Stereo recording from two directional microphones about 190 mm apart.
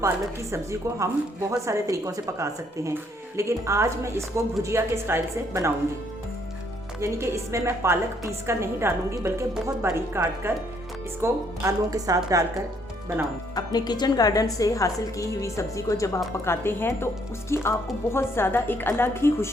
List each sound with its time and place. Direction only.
0.5 s a woman's voice: 15° right (ahead or behind)
7.0 s a woman's voice: 15° right (ahead or behind)
13.6 s a woman's voice: 20° left (ahead or behind)